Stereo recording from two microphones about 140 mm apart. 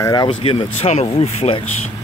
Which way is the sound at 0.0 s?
25° left (ahead or behind).